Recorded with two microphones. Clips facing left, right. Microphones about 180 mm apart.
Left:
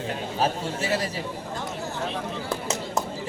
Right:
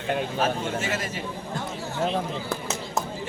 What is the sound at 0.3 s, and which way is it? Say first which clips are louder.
Speech: even; 35° left (ahead or behind).